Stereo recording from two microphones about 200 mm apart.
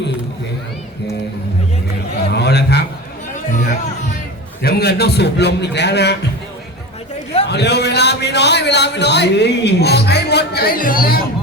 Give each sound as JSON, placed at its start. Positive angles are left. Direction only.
{"t": 2.1, "sound": "a sound", "side_deg": 55}
{"t": 4.6, "sound": "a man's voice", "side_deg": 50}
{"t": 7.4, "sound": "a man's voice", "side_deg": 55}